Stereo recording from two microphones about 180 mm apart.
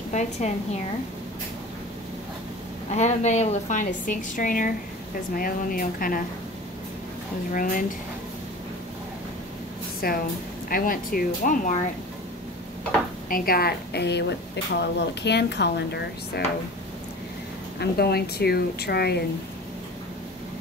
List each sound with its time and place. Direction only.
0.1 s a woman's voice: 40° left (ahead or behind)
2.9 s a woman's voice: 40° left (ahead or behind)
7.5 s a woman's voice: 50° left (ahead or behind)
10.0 s a woman's voice: 55° left (ahead or behind)
13.3 s a woman's voice: 55° left (ahead or behind)
17.7 s a woman's voice: 60° left (ahead or behind)